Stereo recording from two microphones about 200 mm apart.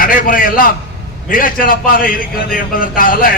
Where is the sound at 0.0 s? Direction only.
45° left (ahead or behind).